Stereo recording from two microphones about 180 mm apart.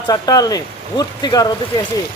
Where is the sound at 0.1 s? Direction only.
20° left (ahead or behind).